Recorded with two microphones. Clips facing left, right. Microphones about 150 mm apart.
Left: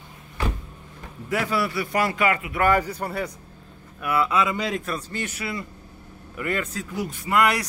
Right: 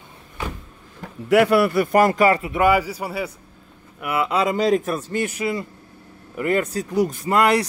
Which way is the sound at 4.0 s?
20° right (ahead or behind).